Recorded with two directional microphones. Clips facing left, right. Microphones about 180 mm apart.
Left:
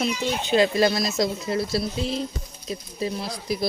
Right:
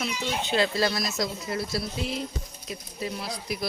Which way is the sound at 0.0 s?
15° left (ahead or behind).